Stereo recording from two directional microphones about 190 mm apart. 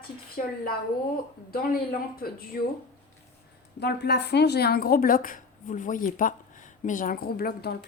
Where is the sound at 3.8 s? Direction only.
60° left (ahead or behind).